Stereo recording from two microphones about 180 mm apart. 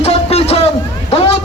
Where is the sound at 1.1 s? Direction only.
35° left (ahead or behind).